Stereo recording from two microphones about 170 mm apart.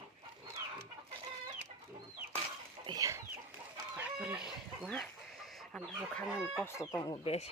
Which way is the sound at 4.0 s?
10° right (ahead or behind).